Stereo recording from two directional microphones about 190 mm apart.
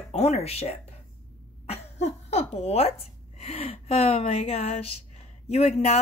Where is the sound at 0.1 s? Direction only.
35° left (ahead or behind).